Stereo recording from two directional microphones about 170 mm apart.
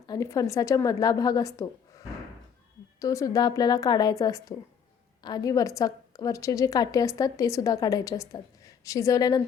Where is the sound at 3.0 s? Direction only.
20° left (ahead or behind).